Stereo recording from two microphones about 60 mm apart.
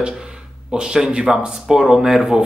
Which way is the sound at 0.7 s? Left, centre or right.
Centre.